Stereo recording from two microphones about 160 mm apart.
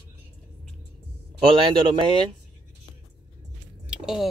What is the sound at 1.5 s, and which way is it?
Speech, 30° right (ahead or behind).